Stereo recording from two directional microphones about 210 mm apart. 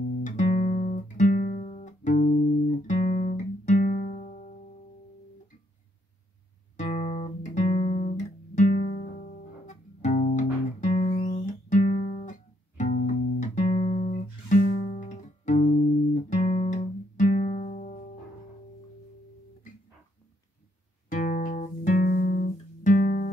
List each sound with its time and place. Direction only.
0.2 s guitar: 35° left (ahead or behind)
6.8 s guitar: 35° left (ahead or behind)
8.5 s music: 30° left (ahead or behind)
21.1 s music: 40° left (ahead or behind)